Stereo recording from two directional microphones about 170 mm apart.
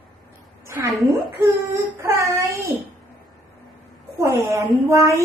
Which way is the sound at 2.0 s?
15° right (ahead or behind).